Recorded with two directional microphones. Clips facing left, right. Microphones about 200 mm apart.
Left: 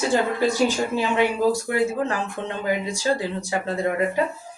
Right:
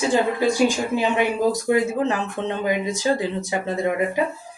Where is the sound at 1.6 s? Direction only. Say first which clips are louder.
Right 3 dB; 20° right (ahead or behind).